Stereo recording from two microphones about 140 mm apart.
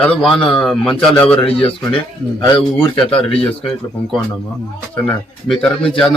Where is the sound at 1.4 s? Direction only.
40° left (ahead or behind).